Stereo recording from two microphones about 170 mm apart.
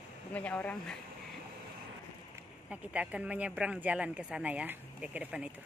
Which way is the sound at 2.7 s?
5° right (ahead or behind).